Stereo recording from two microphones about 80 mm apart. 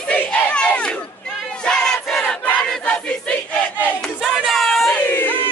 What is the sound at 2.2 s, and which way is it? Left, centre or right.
Battle cry, left.